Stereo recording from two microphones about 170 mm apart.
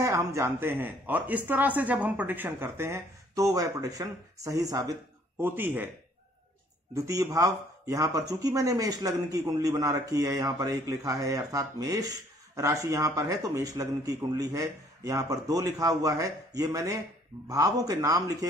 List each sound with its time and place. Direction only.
0.0 s speech: 15° right (ahead or behind)
7.0 s speech: 20° right (ahead or behind)